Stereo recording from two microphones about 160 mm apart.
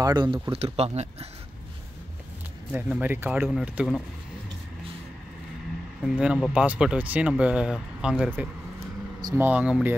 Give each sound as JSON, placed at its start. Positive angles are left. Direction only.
{"t": 0.0, "sound": "speech", "side_deg": -30}
{"t": 2.9, "sound": "speech", "side_deg": -10}
{"t": 6.0, "sound": "speech", "side_deg": -5}